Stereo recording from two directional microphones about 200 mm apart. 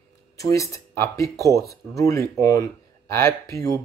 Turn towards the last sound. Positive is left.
turn(degrees=15)  # may be behind; listen again after turning